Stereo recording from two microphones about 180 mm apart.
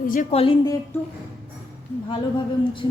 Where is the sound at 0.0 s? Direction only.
45° left (ahead or behind).